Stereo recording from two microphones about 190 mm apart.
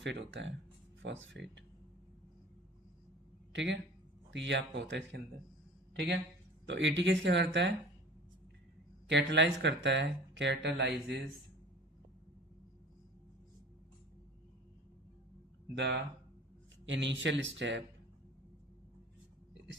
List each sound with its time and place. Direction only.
0.0 s speech: 70° right (ahead or behind)
3.5 s speech: 70° right (ahead or behind)
9.0 s speech: 70° right (ahead or behind)
15.7 s speech: 65° right (ahead or behind)